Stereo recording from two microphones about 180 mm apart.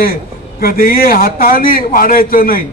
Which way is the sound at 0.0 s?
55° left (ahead or behind).